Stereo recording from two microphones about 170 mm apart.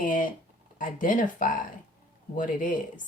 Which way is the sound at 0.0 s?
50° left (ahead or behind).